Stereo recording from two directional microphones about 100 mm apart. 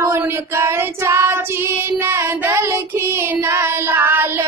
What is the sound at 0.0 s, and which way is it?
Child singing, 25° right (ahead or behind).